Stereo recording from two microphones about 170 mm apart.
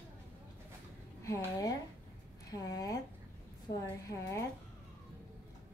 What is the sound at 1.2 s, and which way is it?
Speech, 20° left (ahead or behind).